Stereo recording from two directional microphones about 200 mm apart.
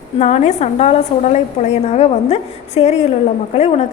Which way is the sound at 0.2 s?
35° left (ahead or behind).